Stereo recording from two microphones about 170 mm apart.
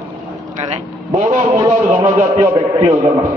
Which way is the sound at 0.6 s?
40° right (ahead or behind).